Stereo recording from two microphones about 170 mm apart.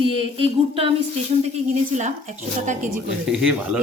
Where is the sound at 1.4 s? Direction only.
40° right (ahead or behind).